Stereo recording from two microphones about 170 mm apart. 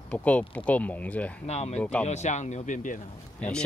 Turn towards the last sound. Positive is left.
turn(degrees=5)  # may be behind; listen again after turning